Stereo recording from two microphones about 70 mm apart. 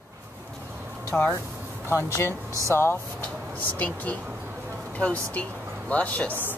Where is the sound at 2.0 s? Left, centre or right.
Left.